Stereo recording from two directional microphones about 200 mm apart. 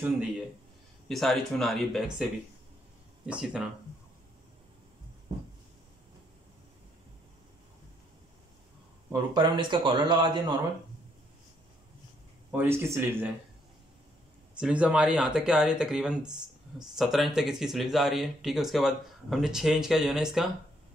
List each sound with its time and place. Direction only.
1.0 s speech: centre (ahead or behind)
3.3 s speech: 5° right (ahead or behind)
9.3 s speech: 25° right (ahead or behind)
12.4 s speech: 10° right (ahead or behind)
14.5 s speech: 5° right (ahead or behind)